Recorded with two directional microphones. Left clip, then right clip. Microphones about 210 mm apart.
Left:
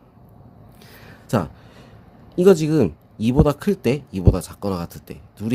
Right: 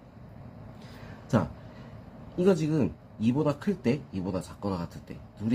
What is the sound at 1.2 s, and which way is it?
Speech, 55° left (ahead or behind).